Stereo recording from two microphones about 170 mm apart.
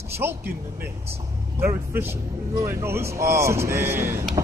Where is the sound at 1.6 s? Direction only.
15° right (ahead or behind).